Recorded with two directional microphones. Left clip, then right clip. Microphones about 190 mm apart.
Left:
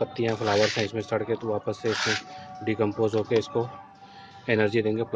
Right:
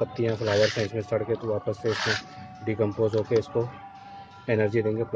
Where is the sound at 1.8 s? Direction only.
25° left (ahead or behind).